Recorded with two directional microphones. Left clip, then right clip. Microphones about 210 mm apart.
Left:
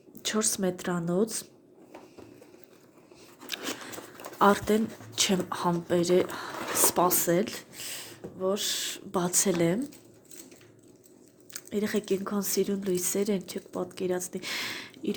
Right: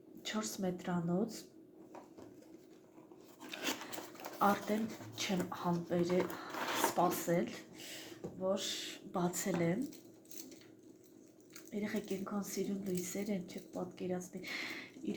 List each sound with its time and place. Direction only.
0.2 s a woman's voice: 50° left (ahead or behind)
4.4 s a woman's voice: 50° left (ahead or behind)
11.5 s a woman's voice: 50° left (ahead or behind)